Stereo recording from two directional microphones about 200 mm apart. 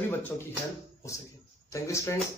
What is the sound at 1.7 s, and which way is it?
Speech, 15° left (ahead or behind).